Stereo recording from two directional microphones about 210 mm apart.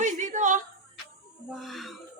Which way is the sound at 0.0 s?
35° right (ahead or behind).